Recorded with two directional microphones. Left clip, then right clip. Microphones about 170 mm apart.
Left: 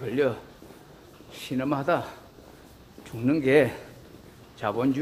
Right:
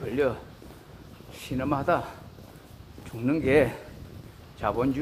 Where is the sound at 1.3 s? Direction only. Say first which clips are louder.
Left 1 dB; 15° left (ahead or behind).